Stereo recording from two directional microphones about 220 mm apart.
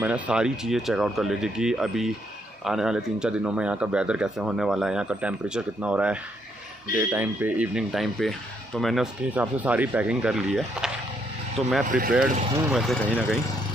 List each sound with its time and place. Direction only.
0.0 s speech: 5° right (ahead or behind)
11.9 s speech: 40° right (ahead or behind)
12.7 s speech: centre (ahead or behind)